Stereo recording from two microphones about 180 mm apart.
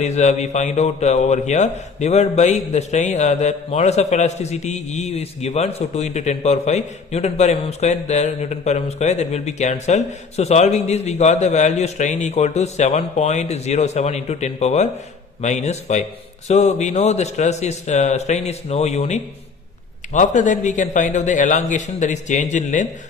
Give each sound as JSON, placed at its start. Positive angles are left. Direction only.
{"t": 0.0, "sound": "a man's voice", "side_deg": 40}